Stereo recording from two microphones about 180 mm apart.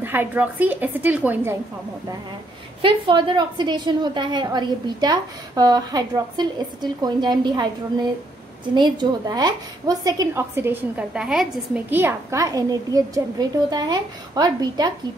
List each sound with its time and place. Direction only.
0.0 s a woman's voice: 10° right (ahead or behind)
2.8 s a woman's voice: 25° right (ahead or behind)